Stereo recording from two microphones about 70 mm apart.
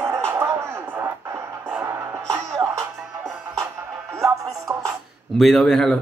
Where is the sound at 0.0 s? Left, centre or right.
Right.